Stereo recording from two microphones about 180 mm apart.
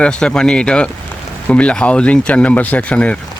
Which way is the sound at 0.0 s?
5° left (ahead or behind).